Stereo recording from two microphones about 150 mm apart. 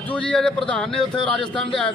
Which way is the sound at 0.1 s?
5° left (ahead or behind).